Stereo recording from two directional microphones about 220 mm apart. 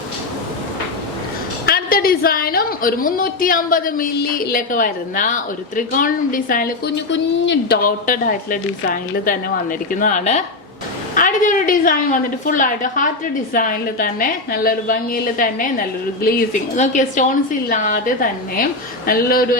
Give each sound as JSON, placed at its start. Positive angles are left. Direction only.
{"t": 1.6, "sound": "a woman's voice", "side_deg": 45}
{"t": 7.1, "sound": "a woman's voice", "side_deg": 55}